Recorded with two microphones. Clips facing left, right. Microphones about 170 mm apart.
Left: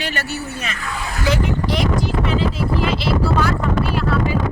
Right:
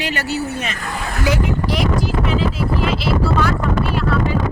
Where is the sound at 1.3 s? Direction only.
5° right (ahead or behind).